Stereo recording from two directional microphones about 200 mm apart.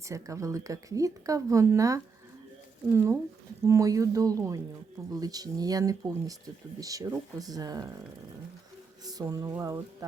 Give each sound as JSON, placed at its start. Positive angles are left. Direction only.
{"t": 0.1, "sound": "speech", "side_deg": -15}
{"t": 9.0, "sound": "speech", "side_deg": -20}